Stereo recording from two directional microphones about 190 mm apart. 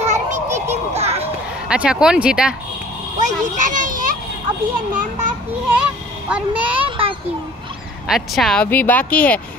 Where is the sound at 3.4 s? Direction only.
40° right (ahead or behind).